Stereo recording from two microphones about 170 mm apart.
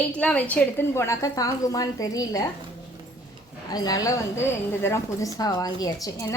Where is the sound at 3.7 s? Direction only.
20° left (ahead or behind).